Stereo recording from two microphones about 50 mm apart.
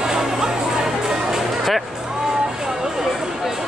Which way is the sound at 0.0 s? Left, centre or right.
Centre.